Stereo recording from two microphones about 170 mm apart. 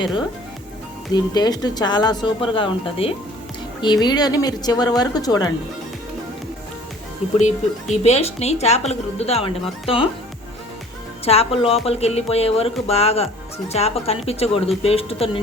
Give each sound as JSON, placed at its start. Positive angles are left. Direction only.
{"t": 1.1, "sound": "speech", "side_deg": 25}
{"t": 7.3, "sound": "speech", "side_deg": 45}
{"t": 11.3, "sound": "speech", "side_deg": 35}